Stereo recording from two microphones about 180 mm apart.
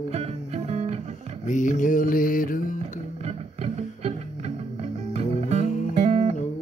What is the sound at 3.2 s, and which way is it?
Music, 35° right (ahead or behind).